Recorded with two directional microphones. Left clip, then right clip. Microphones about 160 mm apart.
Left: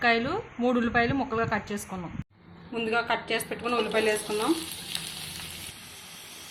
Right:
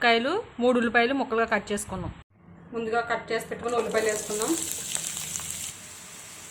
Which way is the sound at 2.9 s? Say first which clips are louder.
Even; 10° left (ahead or behind).